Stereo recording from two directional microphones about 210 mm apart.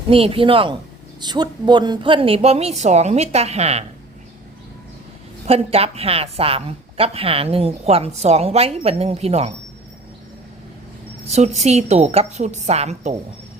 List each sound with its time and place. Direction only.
0.1 s a woman's voice: 25° right (ahead or behind)
5.5 s a woman's voice: 30° right (ahead or behind)
11.3 s a woman's voice: 30° right (ahead or behind)